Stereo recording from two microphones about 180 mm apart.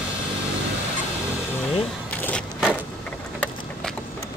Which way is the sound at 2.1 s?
10° left (ahead or behind).